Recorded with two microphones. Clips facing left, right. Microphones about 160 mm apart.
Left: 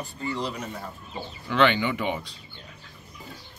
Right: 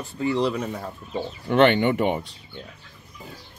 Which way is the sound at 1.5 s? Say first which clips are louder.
Right 5 dB; 65° right (ahead or behind).